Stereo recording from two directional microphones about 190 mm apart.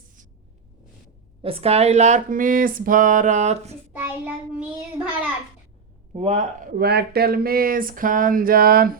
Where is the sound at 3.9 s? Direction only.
10° right (ahead or behind).